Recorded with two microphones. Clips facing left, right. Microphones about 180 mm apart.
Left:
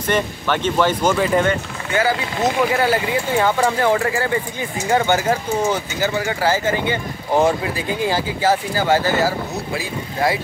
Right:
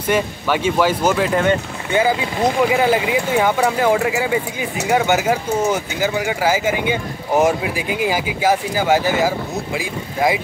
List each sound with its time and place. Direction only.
0.0 s speech: 10° right (ahead or behind)
1.9 s speech: 20° right (ahead or behind)